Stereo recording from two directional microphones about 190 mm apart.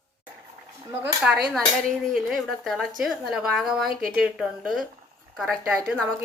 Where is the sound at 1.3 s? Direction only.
5° right (ahead or behind).